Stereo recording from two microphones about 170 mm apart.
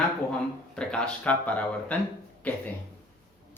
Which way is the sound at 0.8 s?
5° left (ahead or behind).